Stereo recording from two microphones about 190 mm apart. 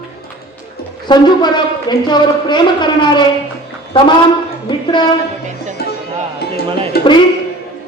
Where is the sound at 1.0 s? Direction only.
25° left (ahead or behind).